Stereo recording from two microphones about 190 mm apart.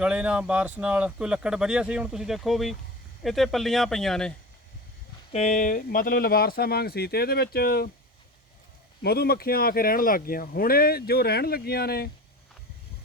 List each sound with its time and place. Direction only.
0.0 s speech: 5° right (ahead or behind)
5.3 s speech: 35° left (ahead or behind); by 7.9 s 55° left (ahead or behind)
9.0 s speech: 55° left (ahead or behind)